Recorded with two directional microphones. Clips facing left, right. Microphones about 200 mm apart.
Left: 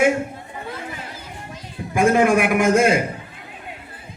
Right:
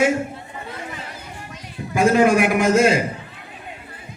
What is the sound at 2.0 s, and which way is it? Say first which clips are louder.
A man's voice: right 1 dB; 55° left (ahead or behind).